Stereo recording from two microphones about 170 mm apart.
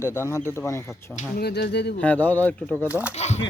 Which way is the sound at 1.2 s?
65° left (ahead or behind).